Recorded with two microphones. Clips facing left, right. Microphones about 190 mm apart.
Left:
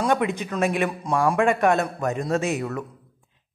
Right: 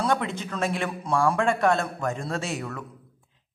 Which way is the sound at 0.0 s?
15° left (ahead or behind).